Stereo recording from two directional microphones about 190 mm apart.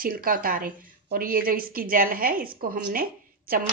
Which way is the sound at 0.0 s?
50° right (ahead or behind).